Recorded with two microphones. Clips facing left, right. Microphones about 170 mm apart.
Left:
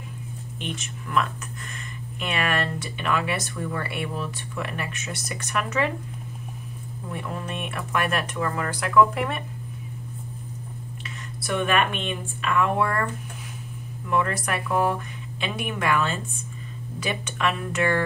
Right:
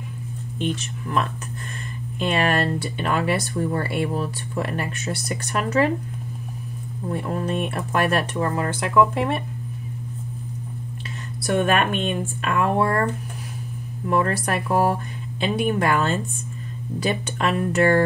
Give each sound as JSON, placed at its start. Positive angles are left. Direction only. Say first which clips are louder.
{"t": 0.7, "sound": "speech", "louder": "right 1 dB", "side_deg": -35}
{"t": 7.1, "sound": "speech", "louder": "right 7 dB", "side_deg": -35}
{"t": 11.4, "sound": "speech", "louder": "right 3 dB", "side_deg": -45}